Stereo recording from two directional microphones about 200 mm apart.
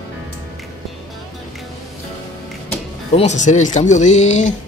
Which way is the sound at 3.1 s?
35° left (ahead or behind).